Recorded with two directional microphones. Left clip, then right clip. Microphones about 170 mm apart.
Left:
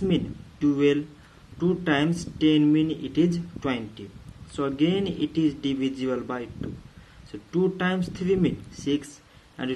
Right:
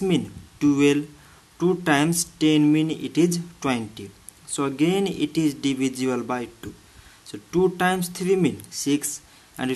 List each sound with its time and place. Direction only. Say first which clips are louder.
0.1 s speech: right 2 dB; 30° right (ahead or behind)